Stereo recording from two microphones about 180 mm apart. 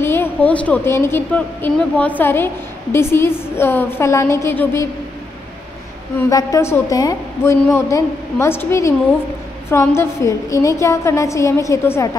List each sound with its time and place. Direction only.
0.0 s a woman's voice: 10° left (ahead or behind)
6.1 s a woman's voice: 15° left (ahead or behind)